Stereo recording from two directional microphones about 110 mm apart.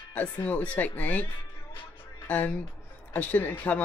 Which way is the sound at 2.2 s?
15° left (ahead or behind).